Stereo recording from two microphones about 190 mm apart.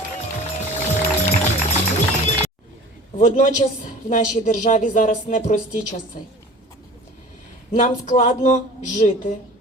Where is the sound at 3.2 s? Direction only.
40° left (ahead or behind).